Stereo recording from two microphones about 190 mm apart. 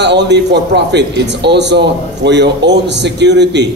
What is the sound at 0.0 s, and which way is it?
A man's voice, 65° right (ahead or behind).